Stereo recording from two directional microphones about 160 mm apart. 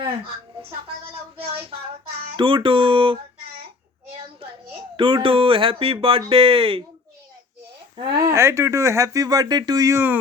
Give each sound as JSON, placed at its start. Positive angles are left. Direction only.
{"t": 2.3, "sound": "speech", "side_deg": -30}
{"t": 4.9, "sound": "speech", "side_deg": -35}
{"t": 7.9, "sound": "speech", "side_deg": -25}